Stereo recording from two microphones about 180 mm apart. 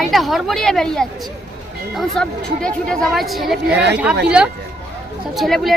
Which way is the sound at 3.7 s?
70° right (ahead or behind).